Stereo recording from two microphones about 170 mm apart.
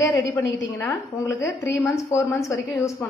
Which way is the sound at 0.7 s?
15° left (ahead or behind).